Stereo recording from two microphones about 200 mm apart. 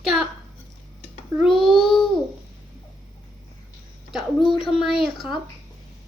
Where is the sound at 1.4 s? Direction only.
Centre (ahead or behind).